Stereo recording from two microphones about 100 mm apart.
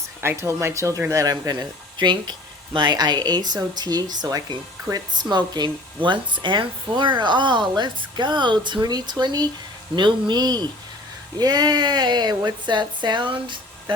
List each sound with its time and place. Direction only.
0.2 s speech: 25° right (ahead or behind); by 13.9 s 55° right (ahead or behind)